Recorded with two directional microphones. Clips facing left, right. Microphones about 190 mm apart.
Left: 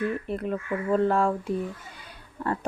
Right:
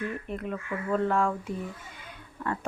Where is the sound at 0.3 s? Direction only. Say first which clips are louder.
Left 5 dB; 35° left (ahead or behind).